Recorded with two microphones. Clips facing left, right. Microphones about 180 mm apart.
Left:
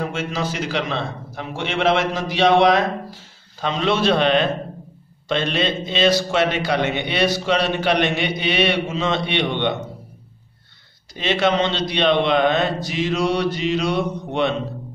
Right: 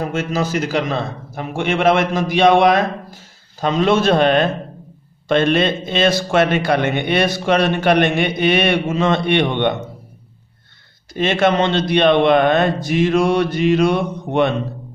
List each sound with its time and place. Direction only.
0.1 s a man's voice: 45° right (ahead or behind)
11.1 s a man's voice: 50° right (ahead or behind)